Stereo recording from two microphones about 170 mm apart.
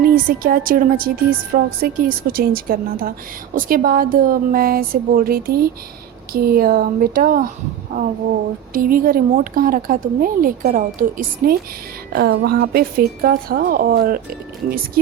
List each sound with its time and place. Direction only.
0.0 s a woman's voice: 55° right (ahead or behind)
8.7 s a woman's voice: 55° right (ahead or behind)